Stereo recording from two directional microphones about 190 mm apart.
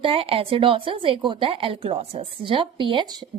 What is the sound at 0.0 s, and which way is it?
Speech, 30° right (ahead or behind).